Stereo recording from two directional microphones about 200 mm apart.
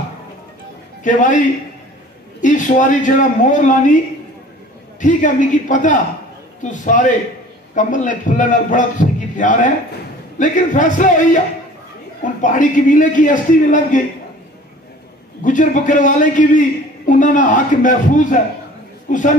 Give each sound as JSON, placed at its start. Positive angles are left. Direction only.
{"t": 1.0, "sound": "a man's voice", "side_deg": 40}
{"t": 5.0, "sound": "a man's voice", "side_deg": 40}
{"t": 12.4, "sound": "a man's voice", "side_deg": 40}
{"t": 15.4, "sound": "a man's voice", "side_deg": 40}